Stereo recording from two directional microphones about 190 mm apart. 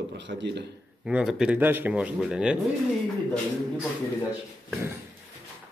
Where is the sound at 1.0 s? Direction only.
5° right (ahead or behind).